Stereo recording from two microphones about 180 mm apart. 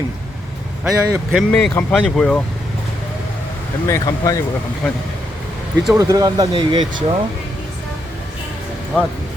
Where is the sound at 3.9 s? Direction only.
20° left (ahead or behind).